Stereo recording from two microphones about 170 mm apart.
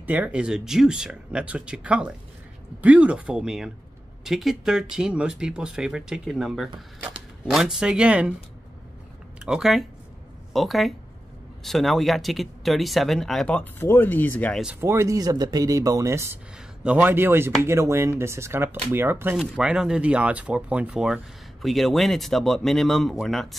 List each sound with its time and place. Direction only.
0.0 s speech: 10° right (ahead or behind)
9.4 s speech: 5° right (ahead or behind)
14.6 s speech: 10° right (ahead or behind)